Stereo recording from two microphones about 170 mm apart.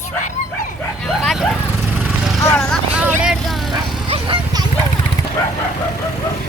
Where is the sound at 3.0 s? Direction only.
10° right (ahead or behind).